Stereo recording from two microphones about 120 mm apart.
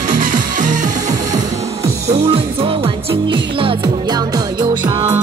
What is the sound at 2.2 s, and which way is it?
Music, 50° right (ahead or behind).